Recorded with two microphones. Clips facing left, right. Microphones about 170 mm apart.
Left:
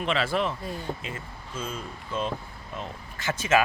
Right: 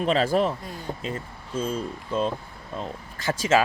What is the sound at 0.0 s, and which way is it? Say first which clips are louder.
Speech: right 5 dB; 40° right (ahead or behind).